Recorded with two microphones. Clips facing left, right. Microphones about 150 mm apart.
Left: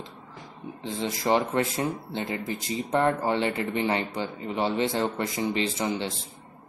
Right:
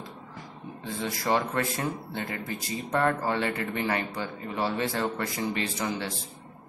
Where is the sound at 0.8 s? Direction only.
20° left (ahead or behind).